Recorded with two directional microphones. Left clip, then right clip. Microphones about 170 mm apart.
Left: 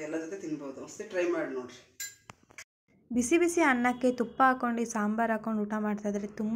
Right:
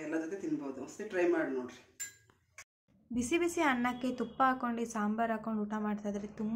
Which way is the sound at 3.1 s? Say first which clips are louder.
Left 6 dB; 25° left (ahead or behind).